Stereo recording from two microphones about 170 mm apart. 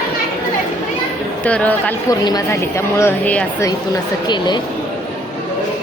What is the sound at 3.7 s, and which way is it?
Speech, 25° left (ahead or behind).